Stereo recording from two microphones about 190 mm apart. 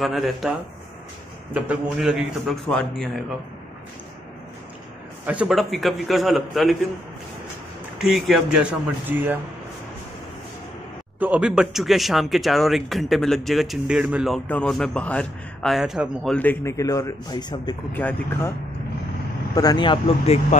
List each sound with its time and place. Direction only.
0.0 s speech: centre (ahead or behind)
5.2 s speech: 5° right (ahead or behind)
8.0 s speech: centre (ahead or behind)
11.1 s speech: 10° right (ahead or behind)
16.3 s a man's voice: 10° left (ahead or behind)
17.9 s a man's voice: 10° left (ahead or behind)
19.5 s speech: 20° left (ahead or behind)